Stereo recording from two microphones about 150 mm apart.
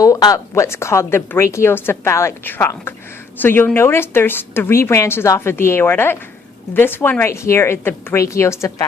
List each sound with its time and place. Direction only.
0.0 s a woman's voice: 25° left (ahead or behind)